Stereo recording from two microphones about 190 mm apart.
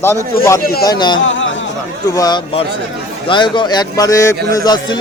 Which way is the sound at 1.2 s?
80° left.